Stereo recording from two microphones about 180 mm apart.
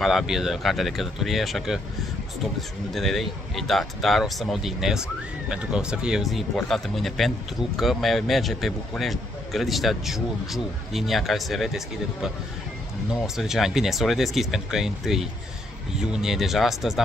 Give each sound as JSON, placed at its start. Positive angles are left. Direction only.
{"t": 0.0, "sound": "speech", "side_deg": 0}
{"t": 2.9, "sound": "speech", "side_deg": 0}